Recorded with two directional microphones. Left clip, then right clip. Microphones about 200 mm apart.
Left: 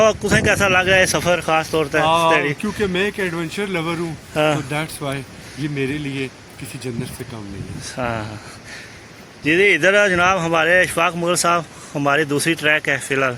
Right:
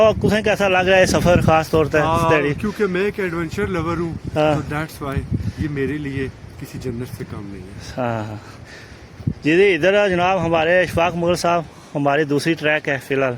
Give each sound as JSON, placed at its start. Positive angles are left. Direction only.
{"t": 0.0, "sound": "speech", "side_deg": -20}
{"t": 2.0, "sound": "speech", "side_deg": -5}
{"t": 2.3, "sound": "speech", "side_deg": -35}
{"t": 2.6, "sound": "speech", "side_deg": 0}
{"t": 4.4, "sound": "speech", "side_deg": -25}
{"t": 4.7, "sound": "speech", "side_deg": 0}
{"t": 7.9, "sound": "speech", "side_deg": -30}
{"t": 9.4, "sound": "speech", "side_deg": -30}